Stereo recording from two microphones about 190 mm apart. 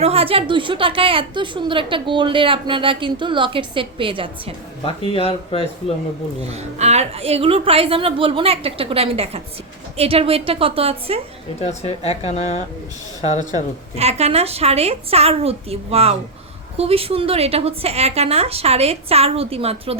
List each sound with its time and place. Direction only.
0.0 s a woman's voice: 30° right (ahead or behind)
4.9 s speech: 30° left (ahead or behind)
6.4 s a woman's voice: 35° right (ahead or behind)
11.6 s speech: 35° left (ahead or behind)
13.9 s a woman's voice: 35° right (ahead or behind)